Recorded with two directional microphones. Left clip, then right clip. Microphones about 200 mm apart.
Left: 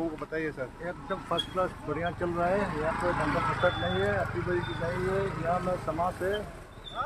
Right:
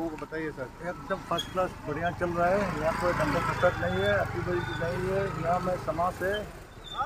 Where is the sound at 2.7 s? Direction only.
45° right (ahead or behind).